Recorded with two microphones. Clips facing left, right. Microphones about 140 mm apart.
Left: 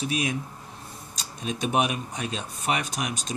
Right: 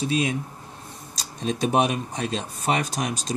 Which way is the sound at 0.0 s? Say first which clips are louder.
Right 4 dB; 25° right (ahead or behind).